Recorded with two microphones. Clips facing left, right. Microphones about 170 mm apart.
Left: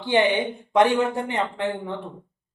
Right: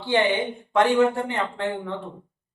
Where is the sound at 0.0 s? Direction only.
20° left (ahead or behind).